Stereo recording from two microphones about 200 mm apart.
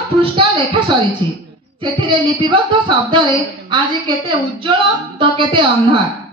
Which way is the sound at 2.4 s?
25° right (ahead or behind).